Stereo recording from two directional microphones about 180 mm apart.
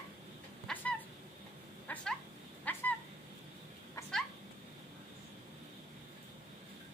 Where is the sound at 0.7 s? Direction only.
10° left (ahead or behind).